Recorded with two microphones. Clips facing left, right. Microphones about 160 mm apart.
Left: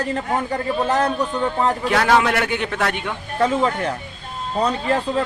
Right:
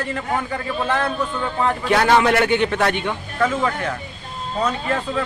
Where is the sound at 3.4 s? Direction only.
30° left (ahead or behind).